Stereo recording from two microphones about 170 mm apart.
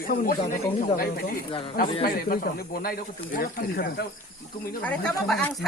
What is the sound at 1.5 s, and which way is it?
Speech, 30° left (ahead or behind).